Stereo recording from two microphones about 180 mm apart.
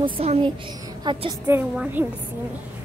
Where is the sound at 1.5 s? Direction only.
10° right (ahead or behind).